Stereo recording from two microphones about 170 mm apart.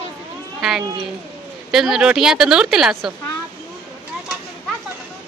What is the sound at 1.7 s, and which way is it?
A woman's voice, 5° right (ahead or behind).